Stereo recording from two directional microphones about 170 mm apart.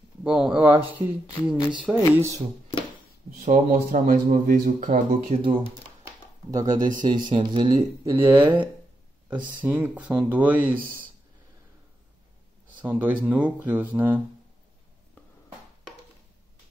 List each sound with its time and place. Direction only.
0.2 s speech: 5° right (ahead or behind)
3.3 s speech: 45° right (ahead or behind)
5.4 s speech: 30° right (ahead or behind)
6.7 s speech: 50° right (ahead or behind)
7.2 s speech: 25° right (ahead or behind); by 11.1 s 10° right (ahead or behind)
12.8 s speech: 10° right (ahead or behind)